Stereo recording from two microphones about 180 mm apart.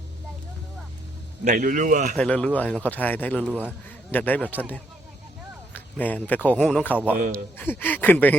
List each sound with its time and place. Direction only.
1.5 s a man's voice: 50° right (ahead or behind)
2.1 s speech: 5° left (ahead or behind)
3.5 s a man's voice: 10° right (ahead or behind)
4.1 s speech: 10° left (ahead or behind)